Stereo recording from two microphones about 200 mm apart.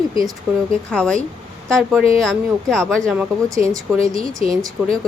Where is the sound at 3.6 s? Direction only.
15° right (ahead or behind).